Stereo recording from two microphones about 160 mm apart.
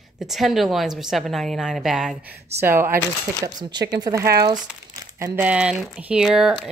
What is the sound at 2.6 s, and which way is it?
Speech, 15° right (ahead or behind).